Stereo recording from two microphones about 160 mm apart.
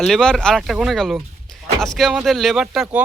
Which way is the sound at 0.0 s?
5° left (ahead or behind).